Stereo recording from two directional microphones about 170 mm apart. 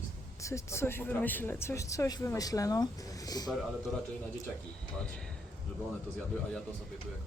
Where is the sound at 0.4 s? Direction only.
15° left (ahead or behind).